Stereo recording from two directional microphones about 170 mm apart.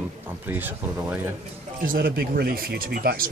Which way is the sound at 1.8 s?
60° right (ahead or behind).